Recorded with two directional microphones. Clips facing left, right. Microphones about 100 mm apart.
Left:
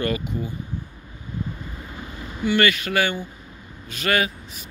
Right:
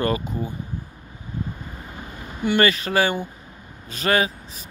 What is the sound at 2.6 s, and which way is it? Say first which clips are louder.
Speech: right 2 dB; 35° right (ahead or behind).